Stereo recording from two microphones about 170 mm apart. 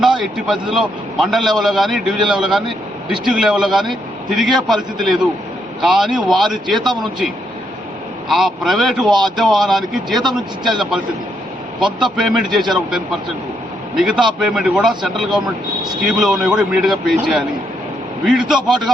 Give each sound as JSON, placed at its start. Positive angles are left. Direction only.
{"t": 0.2, "sound": "a man's voice", "side_deg": 0}
{"t": 9.0, "sound": "a man's voice", "side_deg": -25}
{"t": 9.3, "sound": "a man's voice", "side_deg": 0}
{"t": 11.9, "sound": "a man's voice", "side_deg": -25}
{"t": 12.1, "sound": "a man's voice", "side_deg": 0}
{"t": 13.9, "sound": "a man's voice", "side_deg": -5}